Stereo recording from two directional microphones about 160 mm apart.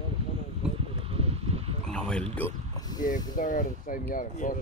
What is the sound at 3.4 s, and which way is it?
Speech, 55° left (ahead or behind).